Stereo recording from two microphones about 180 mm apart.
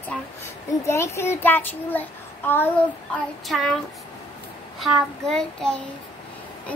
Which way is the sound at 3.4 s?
Centre (ahead or behind).